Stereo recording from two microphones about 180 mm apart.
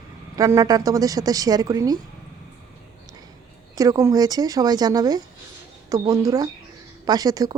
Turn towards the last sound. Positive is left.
turn(degrees=-20)  # may be behind; listen again after turning